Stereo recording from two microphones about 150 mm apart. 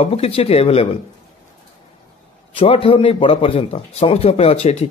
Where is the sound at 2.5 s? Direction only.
40° left (ahead or behind).